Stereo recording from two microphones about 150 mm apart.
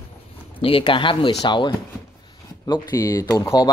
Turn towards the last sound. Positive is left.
turn(degrees=20)  # may be behind; listen again after turning